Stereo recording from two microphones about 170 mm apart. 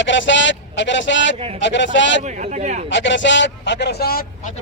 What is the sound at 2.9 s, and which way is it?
Speech, 90° left.